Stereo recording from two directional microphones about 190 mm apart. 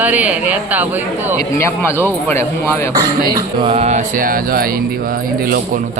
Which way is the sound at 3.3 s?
25° right (ahead or behind).